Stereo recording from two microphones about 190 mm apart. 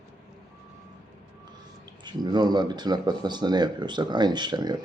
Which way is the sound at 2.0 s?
20° right (ahead or behind).